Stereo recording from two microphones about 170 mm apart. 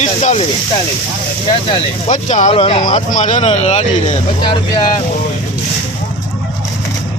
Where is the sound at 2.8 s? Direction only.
50° left (ahead or behind).